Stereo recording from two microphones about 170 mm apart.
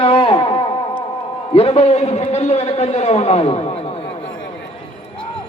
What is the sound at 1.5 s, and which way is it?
A man's voice, 35° left (ahead or behind).